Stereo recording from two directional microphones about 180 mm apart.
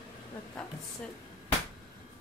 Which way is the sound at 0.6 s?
5° left (ahead or behind).